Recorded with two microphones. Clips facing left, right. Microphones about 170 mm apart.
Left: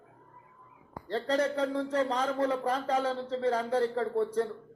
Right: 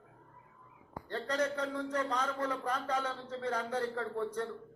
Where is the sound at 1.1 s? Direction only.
30° left (ahead or behind).